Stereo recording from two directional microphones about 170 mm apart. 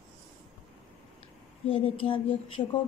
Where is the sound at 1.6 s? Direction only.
35° left (ahead or behind).